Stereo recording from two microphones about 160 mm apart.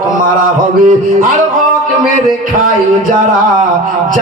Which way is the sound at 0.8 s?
55° right (ahead or behind).